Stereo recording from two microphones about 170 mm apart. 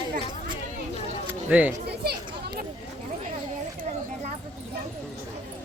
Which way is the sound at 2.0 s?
65° right (ahead or behind).